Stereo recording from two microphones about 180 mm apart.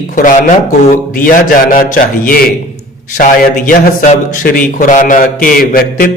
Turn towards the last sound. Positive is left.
turn(degrees=50)  # may be behind; listen again after turning